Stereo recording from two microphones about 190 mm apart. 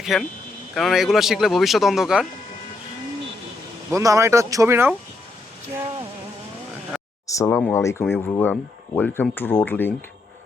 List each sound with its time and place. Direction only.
0.0 s speech: centre (ahead or behind)
3.9 s speech: 15° right (ahead or behind)
7.3 s speech: 15° left (ahead or behind)